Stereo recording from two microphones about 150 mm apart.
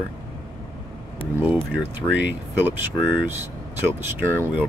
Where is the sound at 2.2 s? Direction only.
10° right (ahead or behind).